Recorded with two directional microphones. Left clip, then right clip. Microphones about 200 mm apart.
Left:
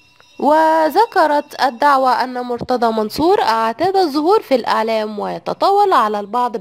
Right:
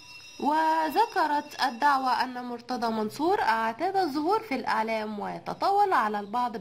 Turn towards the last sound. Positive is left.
turn(degrees=40)  # may be behind; listen again after turning